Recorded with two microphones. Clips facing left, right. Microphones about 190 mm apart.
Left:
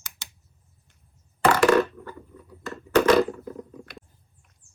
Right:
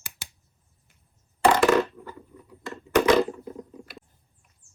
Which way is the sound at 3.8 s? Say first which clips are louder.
Left 1 dB; centre (ahead or behind).